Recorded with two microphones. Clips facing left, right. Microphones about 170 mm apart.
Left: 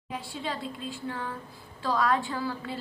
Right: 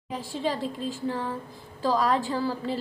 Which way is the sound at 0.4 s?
40° right (ahead or behind).